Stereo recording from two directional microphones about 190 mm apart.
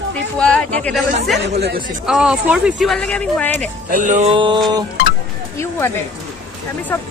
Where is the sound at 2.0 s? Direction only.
5° right (ahead or behind).